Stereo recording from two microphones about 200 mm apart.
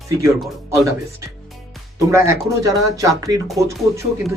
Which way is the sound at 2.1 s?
15° right (ahead or behind).